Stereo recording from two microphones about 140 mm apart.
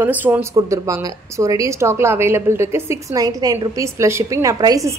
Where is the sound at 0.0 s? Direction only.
15° right (ahead or behind).